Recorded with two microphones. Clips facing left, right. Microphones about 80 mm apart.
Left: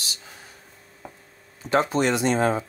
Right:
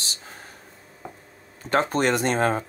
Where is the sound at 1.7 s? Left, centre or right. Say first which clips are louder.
Even; right.